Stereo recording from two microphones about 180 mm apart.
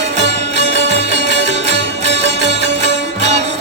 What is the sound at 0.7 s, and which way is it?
Music, 90° right.